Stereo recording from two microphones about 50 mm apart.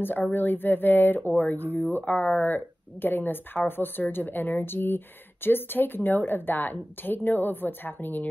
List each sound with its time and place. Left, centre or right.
0.0 s speech: left